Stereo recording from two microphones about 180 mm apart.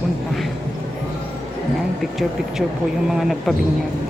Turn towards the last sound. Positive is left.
turn(degrees=0)  # may be behind; listen again after turning